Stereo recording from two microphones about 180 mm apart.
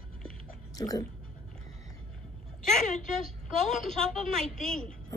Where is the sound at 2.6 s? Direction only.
Centre (ahead or behind).